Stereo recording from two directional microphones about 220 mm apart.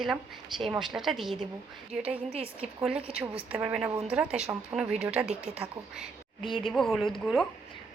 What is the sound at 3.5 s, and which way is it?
A woman's voice, 5° right (ahead or behind).